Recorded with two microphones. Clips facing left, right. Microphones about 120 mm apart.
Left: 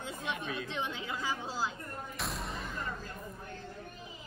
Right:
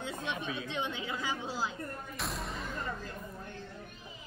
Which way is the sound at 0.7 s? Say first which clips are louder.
Right 1 dB; 20° right (ahead or behind).